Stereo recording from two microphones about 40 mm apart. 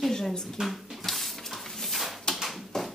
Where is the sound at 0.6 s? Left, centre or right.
Centre.